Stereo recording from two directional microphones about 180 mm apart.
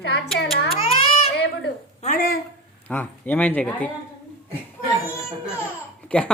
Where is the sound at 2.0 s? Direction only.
45° left (ahead or behind).